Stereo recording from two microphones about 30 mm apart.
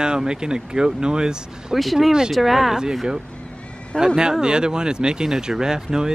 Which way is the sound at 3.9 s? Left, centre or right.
Left.